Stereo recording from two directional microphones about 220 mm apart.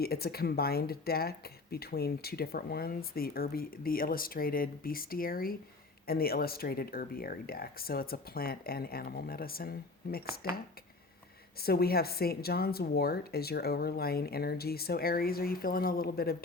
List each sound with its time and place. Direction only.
0.0 s speech: 45° left (ahead or behind)
11.6 s speech: 45° left (ahead or behind)